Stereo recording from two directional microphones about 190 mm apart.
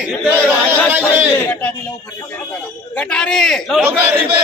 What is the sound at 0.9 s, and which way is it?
Battle cry, 10° right (ahead or behind).